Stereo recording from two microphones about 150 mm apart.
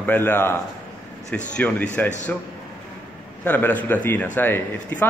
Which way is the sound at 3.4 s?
10° left (ahead or behind).